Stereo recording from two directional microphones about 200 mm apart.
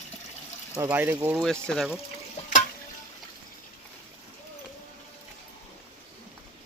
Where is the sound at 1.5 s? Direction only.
5° left (ahead or behind).